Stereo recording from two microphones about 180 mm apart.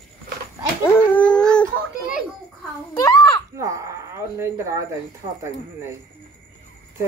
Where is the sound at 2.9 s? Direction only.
15° left (ahead or behind).